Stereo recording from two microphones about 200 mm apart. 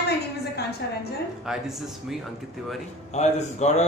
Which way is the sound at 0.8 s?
55° left (ahead or behind).